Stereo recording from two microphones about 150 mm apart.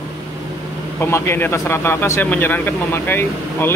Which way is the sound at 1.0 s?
15° left (ahead or behind).